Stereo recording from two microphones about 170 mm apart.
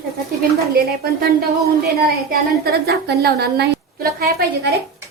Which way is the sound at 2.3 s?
65° right (ahead or behind).